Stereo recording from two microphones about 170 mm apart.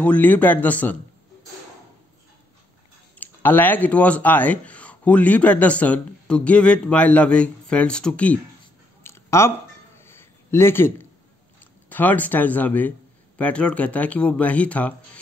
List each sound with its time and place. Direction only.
0.0 s speech: 10° left (ahead or behind)
3.2 s speech: 10° left (ahead or behind)
9.0 s a sound: 15° left (ahead or behind)
11.6 s speech: 10° left (ahead or behind)